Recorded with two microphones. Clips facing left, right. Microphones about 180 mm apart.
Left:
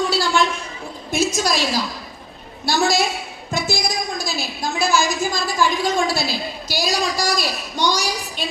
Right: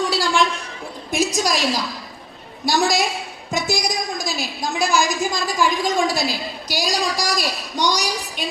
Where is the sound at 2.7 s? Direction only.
15° right (ahead or behind).